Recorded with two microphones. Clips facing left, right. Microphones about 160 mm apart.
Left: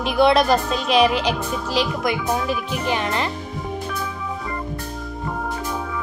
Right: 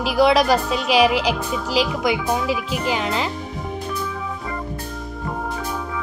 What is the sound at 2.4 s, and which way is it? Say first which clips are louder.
Speech: right 1 dB; 90° right.